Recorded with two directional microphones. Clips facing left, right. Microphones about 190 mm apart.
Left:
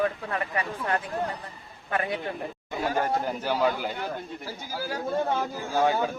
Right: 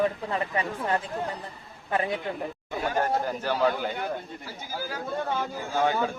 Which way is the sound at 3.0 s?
10° left (ahead or behind).